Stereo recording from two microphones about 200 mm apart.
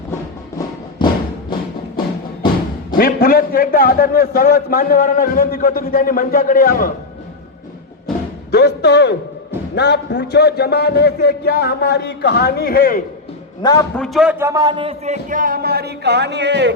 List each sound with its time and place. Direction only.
0.9 s music: 20° left (ahead or behind)
3.0 s a man's voice: 45° left (ahead or behind)
8.5 s a man's voice: 55° left (ahead or behind)
13.6 s a man's voice: 20° left (ahead or behind)
13.9 s a man's voice: centre (ahead or behind); by 16.7 s 60° right (ahead or behind)